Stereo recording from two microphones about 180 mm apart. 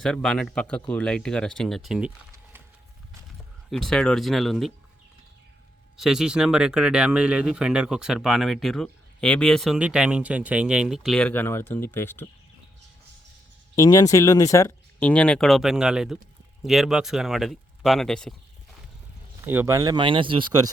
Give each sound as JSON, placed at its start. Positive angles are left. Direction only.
{"t": 0.0, "sound": "speech", "side_deg": 5}
{"t": 3.7, "sound": "speech", "side_deg": 0}
{"t": 6.0, "sound": "speech", "side_deg": -5}
{"t": 13.7, "sound": "speech", "side_deg": 20}
{"t": 19.5, "sound": "speech", "side_deg": -15}